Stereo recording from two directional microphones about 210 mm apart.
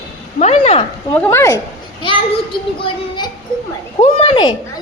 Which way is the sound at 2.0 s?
25° left (ahead or behind).